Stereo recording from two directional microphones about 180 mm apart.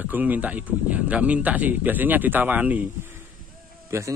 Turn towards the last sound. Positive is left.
turn(degrees=-15)  # may be behind; listen again after turning